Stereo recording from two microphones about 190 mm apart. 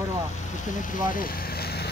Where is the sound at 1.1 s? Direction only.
50° left (ahead or behind).